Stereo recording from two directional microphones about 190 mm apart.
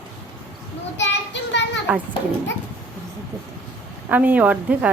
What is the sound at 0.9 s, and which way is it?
Child singing, 70° left (ahead or behind).